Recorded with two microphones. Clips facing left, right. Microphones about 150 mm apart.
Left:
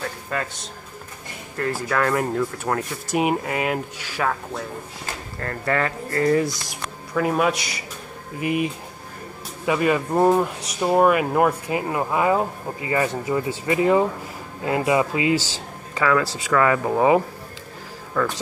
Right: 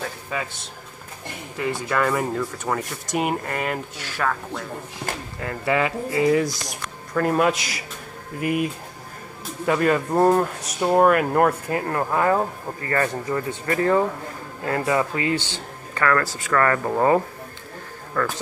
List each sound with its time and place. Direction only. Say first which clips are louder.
0.0 s speech: left 1 dB; 5° right (ahead or behind)
5.4 s speech: right 1 dB; 10° right (ahead or behind)
6.4 s speech: even; centre (ahead or behind)